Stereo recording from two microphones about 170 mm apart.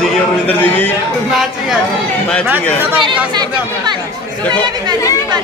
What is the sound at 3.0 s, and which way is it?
Speech, 25° right (ahead or behind).